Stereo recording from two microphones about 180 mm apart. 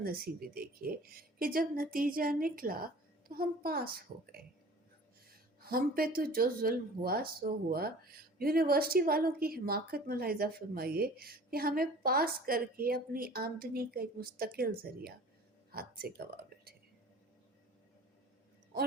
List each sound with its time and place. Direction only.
0.0 s speech: 55° right (ahead or behind)